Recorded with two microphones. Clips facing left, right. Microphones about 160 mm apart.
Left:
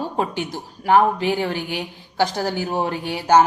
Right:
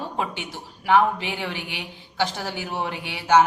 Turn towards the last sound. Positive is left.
turn(degrees=40)  # may be behind; listen again after turning